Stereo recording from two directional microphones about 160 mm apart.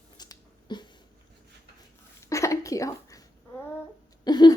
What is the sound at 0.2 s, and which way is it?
Finger snapping, 25° left (ahead or behind).